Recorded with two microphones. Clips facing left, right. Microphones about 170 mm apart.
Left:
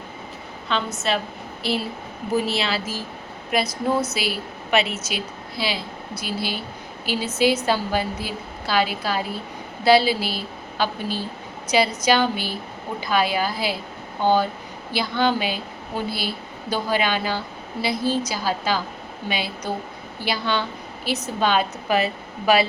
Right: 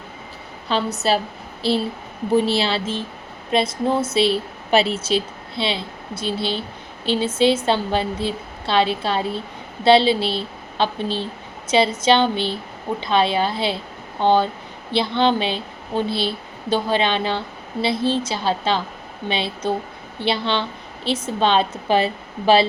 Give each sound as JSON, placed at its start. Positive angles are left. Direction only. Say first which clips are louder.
{"t": 0.7, "sound": "a woman's voice", "louder": "right 4 dB", "side_deg": -35}